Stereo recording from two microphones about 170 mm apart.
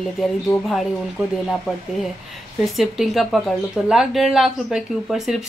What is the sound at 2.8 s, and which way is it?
Speech, centre (ahead or behind).